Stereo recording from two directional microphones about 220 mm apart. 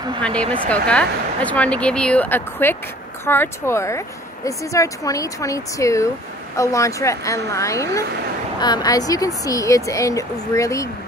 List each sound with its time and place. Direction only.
0.2 s speech: 5° left (ahead or behind)